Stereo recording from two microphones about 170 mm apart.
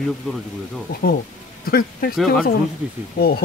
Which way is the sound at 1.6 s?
60° left (ahead or behind).